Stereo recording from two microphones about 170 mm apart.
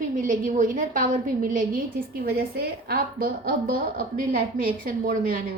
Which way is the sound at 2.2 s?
65° right (ahead or behind).